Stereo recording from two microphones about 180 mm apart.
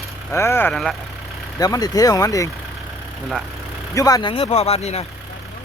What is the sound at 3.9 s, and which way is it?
Speech, 20° left (ahead or behind).